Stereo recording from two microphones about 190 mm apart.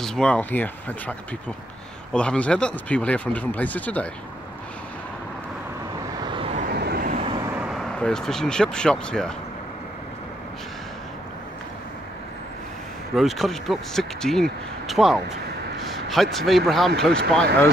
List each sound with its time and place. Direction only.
0.0 s speech: 5° left (ahead or behind)
2.1 s speech: 5° left (ahead or behind)
6.2 s vehicle: 25° right (ahead or behind)
6.7 s vehicle: 55° right (ahead or behind)
7.2 s vehicle: 25° right (ahead or behind)
7.4 s speech: 5° right (ahead or behind)
13.1 s speech: centre (ahead or behind)